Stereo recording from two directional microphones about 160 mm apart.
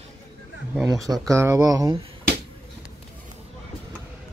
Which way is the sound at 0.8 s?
25° right (ahead or behind).